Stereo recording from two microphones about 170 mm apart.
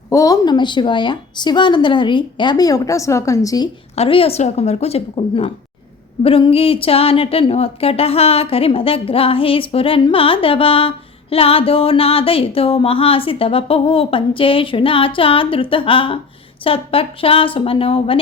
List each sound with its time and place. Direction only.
0.1 s a woman's voice: 20° left (ahead or behind)
3.9 s a woman's voice: 35° left (ahead or behind)